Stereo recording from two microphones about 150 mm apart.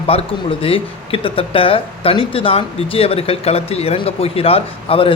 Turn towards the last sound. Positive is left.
turn(degrees=40)  # may be behind; listen again after turning